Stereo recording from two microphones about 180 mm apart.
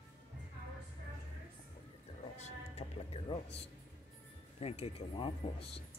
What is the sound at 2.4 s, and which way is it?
Music, 35° left (ahead or behind).